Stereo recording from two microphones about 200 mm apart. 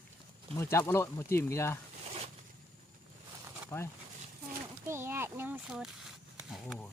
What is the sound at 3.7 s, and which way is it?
Speech, 10° left (ahead or behind).